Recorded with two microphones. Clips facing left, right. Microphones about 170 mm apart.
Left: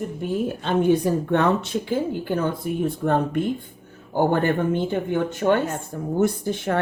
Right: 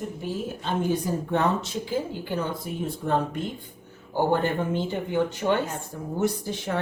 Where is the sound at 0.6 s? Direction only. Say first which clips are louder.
Left 7 dB; 65° left (ahead or behind).